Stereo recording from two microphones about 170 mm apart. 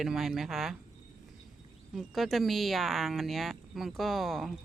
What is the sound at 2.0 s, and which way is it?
Speech, centre (ahead or behind).